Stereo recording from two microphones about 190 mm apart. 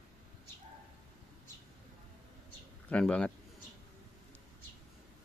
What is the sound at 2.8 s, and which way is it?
Speech, 5° left (ahead or behind).